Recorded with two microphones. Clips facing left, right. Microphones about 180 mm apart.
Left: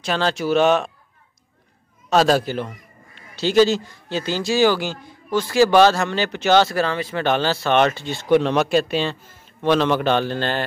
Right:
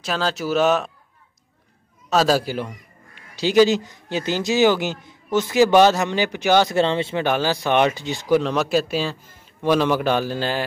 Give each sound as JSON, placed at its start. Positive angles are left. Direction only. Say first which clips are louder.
{"t": 0.0, "sound": "speech", "louder": "left 2 dB", "side_deg": 0}
{"t": 2.0, "sound": "a man's voice", "louder": "left 2 dB", "side_deg": -5}
{"t": 6.8, "sound": "speech", "louder": "right 3 dB", "side_deg": -25}
{"t": 7.2, "sound": "a man's voice", "louder": "left 3 dB", "side_deg": -10}
{"t": 8.3, "sound": "a man's voice", "louder": "left 2 dB", "side_deg": 0}